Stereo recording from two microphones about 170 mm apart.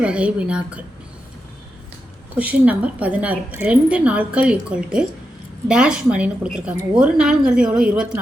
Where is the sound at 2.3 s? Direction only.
10° right (ahead or behind).